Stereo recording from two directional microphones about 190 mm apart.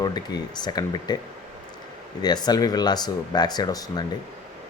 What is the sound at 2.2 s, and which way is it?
Speech, 20° left (ahead or behind).